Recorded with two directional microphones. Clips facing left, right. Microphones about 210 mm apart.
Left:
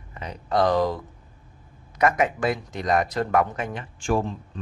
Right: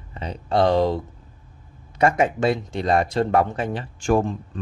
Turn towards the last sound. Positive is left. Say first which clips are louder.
# right 4 dB
turn(degrees=-45)  # may be behind; listen again after turning